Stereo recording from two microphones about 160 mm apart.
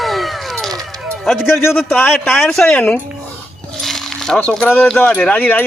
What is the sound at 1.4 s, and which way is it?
Speech, 15° left (ahead or behind).